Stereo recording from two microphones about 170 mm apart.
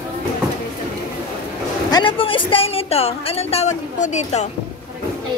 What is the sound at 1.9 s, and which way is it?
Speech, 30° left (ahead or behind).